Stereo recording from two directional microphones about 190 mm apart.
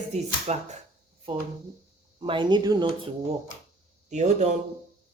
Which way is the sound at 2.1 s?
25° right (ahead or behind).